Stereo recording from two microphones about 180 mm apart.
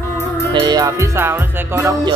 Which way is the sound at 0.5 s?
25° right (ahead or behind).